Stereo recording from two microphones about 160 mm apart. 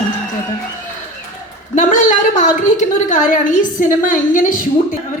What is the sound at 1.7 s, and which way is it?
A woman's voice, 50° left (ahead or behind).